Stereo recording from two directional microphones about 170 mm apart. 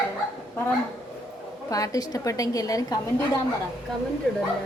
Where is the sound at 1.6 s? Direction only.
20° left (ahead or behind).